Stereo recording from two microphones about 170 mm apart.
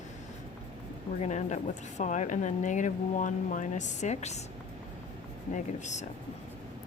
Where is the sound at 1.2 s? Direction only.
45° left (ahead or behind).